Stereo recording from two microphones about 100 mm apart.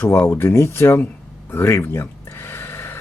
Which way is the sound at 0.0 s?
25° left (ahead or behind).